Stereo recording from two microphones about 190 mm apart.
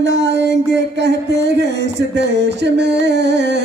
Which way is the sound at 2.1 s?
65° right (ahead or behind).